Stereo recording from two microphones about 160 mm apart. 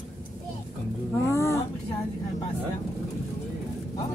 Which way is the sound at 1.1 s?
15° left (ahead or behind).